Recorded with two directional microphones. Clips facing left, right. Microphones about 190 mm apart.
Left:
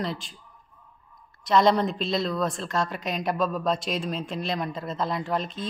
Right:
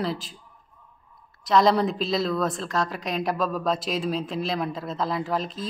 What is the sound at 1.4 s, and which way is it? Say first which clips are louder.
A woman's voice: right 1 dB; centre (ahead or behind).